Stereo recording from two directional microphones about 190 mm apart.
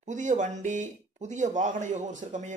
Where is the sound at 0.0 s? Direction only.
40° right (ahead or behind).